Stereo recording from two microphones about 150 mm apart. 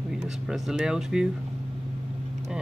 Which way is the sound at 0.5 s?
5° right (ahead or behind).